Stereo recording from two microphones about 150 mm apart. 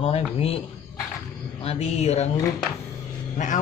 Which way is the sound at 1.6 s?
45° left (ahead or behind).